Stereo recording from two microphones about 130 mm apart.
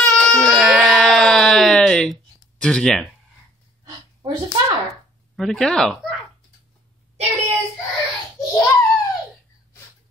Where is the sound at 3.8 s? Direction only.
30° right (ahead or behind).